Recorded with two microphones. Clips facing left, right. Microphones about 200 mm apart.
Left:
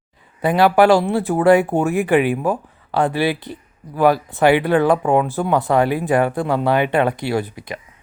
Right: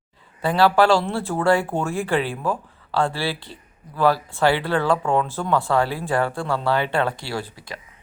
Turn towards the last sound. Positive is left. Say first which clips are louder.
# left 8 dB
turn(degrees=20)  # may be behind; listen again after turning